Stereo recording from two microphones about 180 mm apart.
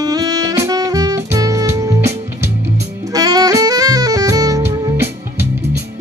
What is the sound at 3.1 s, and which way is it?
Saxophone, 20° right (ahead or behind).